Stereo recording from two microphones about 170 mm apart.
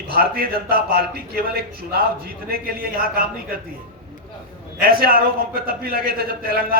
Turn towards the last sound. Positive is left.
turn(degrees=-60)  # may be behind; listen again after turning